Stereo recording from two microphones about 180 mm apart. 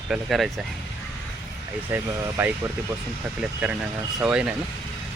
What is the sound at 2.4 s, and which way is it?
Speech, 10° right (ahead or behind).